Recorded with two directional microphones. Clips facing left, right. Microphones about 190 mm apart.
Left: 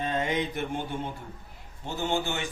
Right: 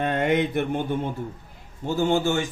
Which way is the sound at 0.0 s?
65° right (ahead or behind).